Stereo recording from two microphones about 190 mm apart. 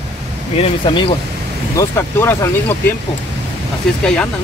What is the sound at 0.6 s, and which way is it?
Speech, 30° left (ahead or behind).